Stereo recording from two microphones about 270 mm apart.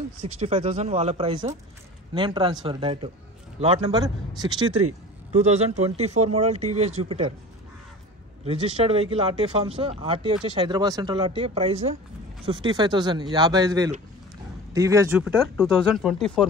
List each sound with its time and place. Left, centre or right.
0.2 s speech: right
8.5 s speech: right; by 16.4 s centre